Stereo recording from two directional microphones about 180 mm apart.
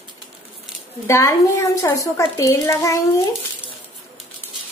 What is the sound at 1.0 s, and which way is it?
A woman's voice, 15° left (ahead or behind).